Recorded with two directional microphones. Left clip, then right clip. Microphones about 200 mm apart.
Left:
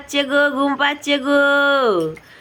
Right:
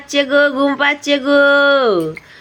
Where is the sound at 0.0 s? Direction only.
15° right (ahead or behind).